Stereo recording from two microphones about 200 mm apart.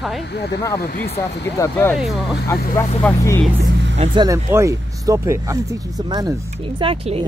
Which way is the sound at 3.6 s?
60° right (ahead or behind).